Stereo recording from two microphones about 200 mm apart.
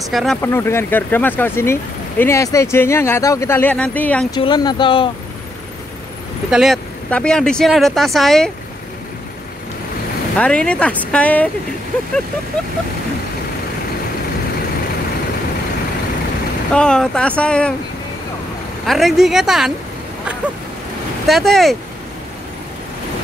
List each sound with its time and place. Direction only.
0.1 s speech: centre (ahead or behind)
0.4 s speech: 10° left (ahead or behind)
4.3 s speech: 20° left (ahead or behind)
6.5 s speech: centre (ahead or behind)
10.4 s speech: 5° left (ahead or behind)
16.7 s speech: 5° left (ahead or behind)
18.9 s speech: centre (ahead or behind)
21.3 s speech: centre (ahead or behind)